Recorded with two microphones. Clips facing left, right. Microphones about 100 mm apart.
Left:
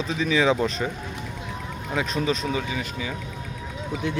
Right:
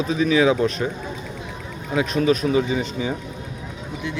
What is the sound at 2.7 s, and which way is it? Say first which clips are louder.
Speech: right 6 dB; 30° right (ahead or behind).